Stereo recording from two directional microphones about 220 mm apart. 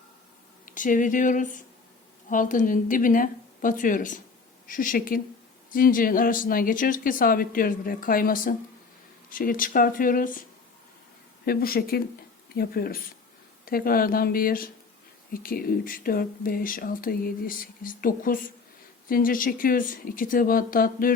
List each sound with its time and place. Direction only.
0.6 s speech: 35° left (ahead or behind)
11.4 s speech: 45° left (ahead or behind)